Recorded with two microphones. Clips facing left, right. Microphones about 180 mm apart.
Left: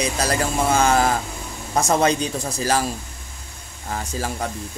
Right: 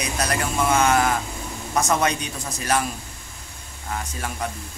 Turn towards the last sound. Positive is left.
turn(degrees=30)  # may be behind; listen again after turning